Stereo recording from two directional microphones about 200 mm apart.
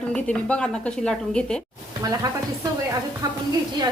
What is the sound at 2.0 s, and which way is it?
A woman's voice, 20° right (ahead or behind).